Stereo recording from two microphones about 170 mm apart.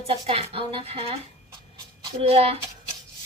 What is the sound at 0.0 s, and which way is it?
Speech, 35° right (ahead or behind).